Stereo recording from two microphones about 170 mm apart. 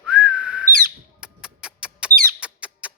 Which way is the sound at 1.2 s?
5° right (ahead or behind).